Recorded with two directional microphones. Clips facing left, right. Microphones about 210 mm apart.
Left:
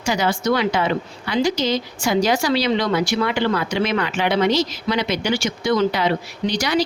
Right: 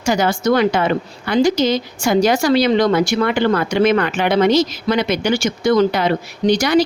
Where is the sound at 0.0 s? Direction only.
50° right (ahead or behind).